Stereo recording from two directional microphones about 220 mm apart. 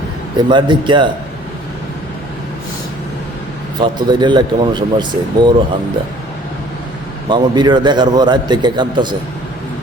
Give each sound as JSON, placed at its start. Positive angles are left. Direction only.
{"t": 0.3, "sound": "a man's voice", "side_deg": -20}
{"t": 3.8, "sound": "a man's voice", "side_deg": -20}
{"t": 7.3, "sound": "a man's voice", "side_deg": -20}